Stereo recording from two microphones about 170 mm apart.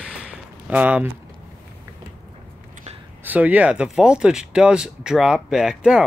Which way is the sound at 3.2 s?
10° right (ahead or behind).